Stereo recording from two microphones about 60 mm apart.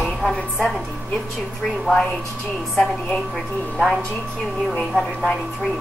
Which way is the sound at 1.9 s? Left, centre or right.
Right.